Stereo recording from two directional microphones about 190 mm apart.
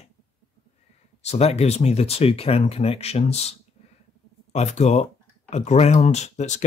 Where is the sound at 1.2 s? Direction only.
35° left (ahead or behind).